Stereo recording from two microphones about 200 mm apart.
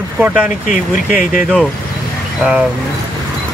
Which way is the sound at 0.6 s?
45° left (ahead or behind).